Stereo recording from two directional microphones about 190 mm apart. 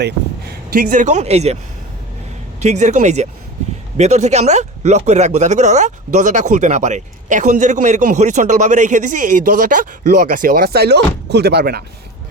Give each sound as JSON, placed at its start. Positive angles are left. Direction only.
{"t": 0.0, "sound": "speech", "side_deg": -55}
{"t": 2.6, "sound": "speech", "side_deg": -35}